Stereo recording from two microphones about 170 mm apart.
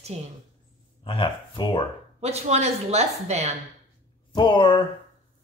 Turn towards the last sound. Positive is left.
turn(degrees=30)  # may be behind; listen again after turning